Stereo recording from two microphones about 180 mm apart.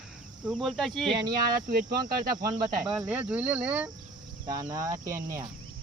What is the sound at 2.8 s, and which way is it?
Speech, 5° right (ahead or behind).